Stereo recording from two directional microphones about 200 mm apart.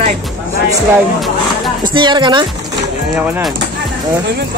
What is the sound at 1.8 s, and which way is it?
Speech, 25° right (ahead or behind).